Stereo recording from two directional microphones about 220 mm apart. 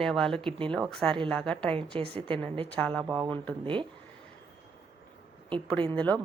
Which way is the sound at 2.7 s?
5° left (ahead or behind).